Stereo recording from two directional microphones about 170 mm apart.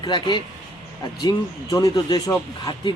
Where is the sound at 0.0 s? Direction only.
25° left (ahead or behind).